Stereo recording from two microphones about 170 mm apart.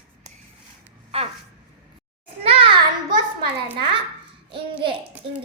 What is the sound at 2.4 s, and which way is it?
Child singing, 30° right (ahead or behind).